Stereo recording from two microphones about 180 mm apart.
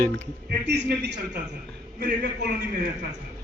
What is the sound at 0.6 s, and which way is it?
Speech, 70° right (ahead or behind).